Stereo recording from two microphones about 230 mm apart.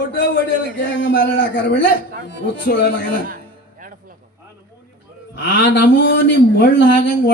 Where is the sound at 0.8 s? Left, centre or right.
Left.